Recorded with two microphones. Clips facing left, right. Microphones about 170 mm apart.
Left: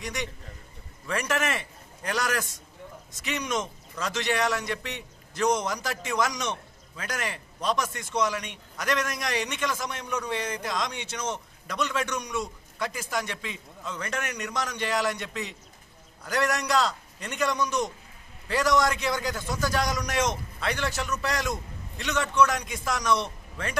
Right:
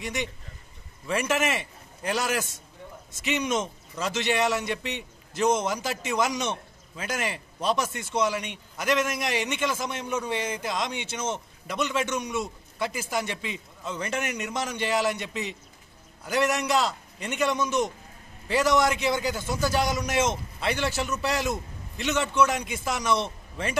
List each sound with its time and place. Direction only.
0.0 s a man's voice: 25° right (ahead or behind)